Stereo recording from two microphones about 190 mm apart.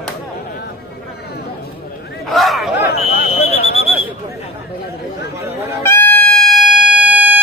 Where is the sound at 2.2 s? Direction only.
Centre (ahead or behind).